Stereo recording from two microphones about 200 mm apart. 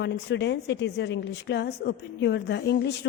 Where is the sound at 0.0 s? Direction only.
60° left (ahead or behind).